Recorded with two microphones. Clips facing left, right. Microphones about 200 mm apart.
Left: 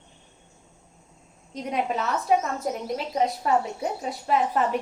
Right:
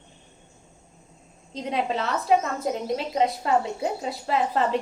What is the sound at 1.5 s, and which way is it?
A woman's voice, 30° right (ahead or behind).